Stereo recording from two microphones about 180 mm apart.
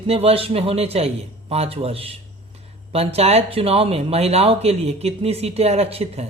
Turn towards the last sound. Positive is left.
turn(degrees=-35)  # may be behind; listen again after turning